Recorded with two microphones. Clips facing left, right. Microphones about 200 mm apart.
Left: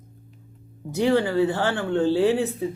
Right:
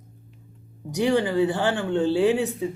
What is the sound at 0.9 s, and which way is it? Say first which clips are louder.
Speech: left 1 dB; 15° right (ahead or behind).